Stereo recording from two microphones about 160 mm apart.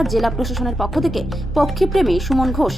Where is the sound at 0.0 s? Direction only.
Centre (ahead or behind).